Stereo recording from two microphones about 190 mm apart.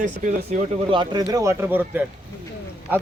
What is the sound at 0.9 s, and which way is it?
A man's voice, 25° right (ahead or behind).